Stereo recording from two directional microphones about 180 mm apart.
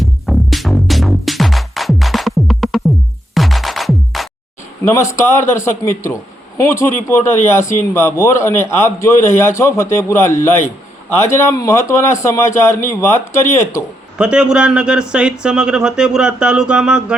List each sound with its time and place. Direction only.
0.0 s music: centre (ahead or behind)
4.9 s a man's voice: 15° left (ahead or behind)
14.2 s speech: 5° right (ahead or behind)